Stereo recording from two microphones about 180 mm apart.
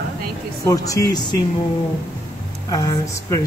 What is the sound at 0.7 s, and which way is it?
Speech, 20° left (ahead or behind).